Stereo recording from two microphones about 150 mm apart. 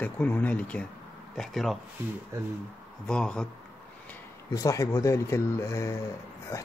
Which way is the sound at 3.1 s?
5° left (ahead or behind).